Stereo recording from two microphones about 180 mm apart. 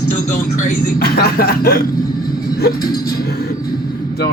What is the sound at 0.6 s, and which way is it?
Speech, 60° left (ahead or behind).